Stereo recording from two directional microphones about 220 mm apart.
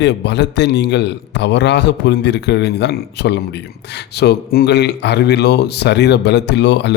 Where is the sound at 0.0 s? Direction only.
50° left (ahead or behind).